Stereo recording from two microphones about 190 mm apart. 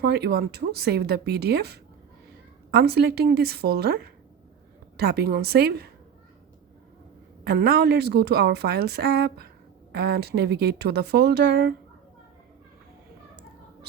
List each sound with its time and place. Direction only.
0.0 s a woman's voice: 60° right (ahead or behind)
7.4 s a woman's voice: 55° right (ahead or behind)